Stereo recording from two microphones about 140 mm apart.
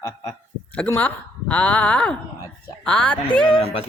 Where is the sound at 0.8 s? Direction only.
10° left (ahead or behind).